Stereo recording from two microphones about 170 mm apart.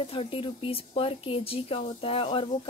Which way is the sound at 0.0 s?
35° left (ahead or behind).